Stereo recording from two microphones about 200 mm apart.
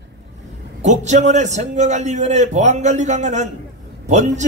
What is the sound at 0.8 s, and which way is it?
A man's voice, 35° right (ahead or behind).